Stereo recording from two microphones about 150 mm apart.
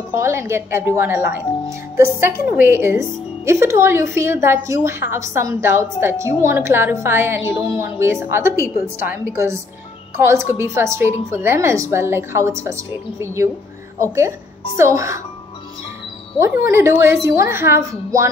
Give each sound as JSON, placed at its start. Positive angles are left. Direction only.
{"t": 0.1, "sound": "a woman's voice", "side_deg": -20}
{"t": 16.3, "sound": "a woman's voice", "side_deg": -20}